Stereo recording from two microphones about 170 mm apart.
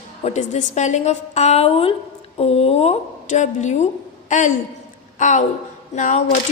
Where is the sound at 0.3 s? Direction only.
45° left (ahead or behind).